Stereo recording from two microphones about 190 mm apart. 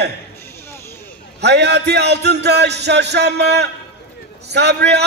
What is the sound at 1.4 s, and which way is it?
A man's voice, 60° right (ahead or behind).